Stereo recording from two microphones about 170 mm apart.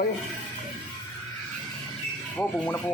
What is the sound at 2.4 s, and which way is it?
Speech, 10° left (ahead or behind).